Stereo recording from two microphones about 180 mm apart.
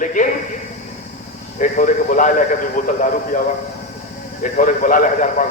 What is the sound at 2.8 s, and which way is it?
Speech, 45° left (ahead or behind).